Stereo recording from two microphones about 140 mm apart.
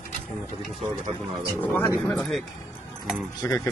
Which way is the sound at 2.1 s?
5° left (ahead or behind).